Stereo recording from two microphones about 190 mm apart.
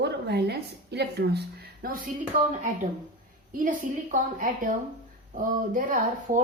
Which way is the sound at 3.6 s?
45° right (ahead or behind).